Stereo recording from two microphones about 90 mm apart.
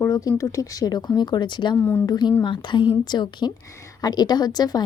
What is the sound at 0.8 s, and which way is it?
Speech, 50° left (ahead or behind).